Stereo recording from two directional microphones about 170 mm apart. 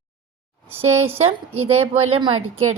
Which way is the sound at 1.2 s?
35° right (ahead or behind).